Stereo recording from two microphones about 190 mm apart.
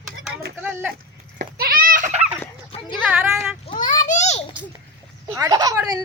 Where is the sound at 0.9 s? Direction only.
50° right (ahead or behind).